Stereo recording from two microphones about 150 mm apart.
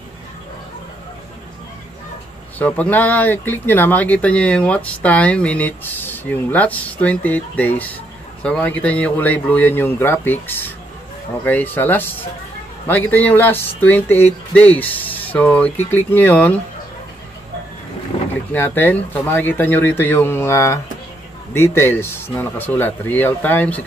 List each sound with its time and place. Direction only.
2.6 s speech: 10° left (ahead or behind)
18.1 s boat: 40° left (ahead or behind)
18.5 s speech: 10° left (ahead or behind)